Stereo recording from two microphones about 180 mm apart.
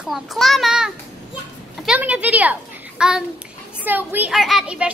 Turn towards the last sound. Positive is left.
turn(degrees=-5)  # may be behind; listen again after turning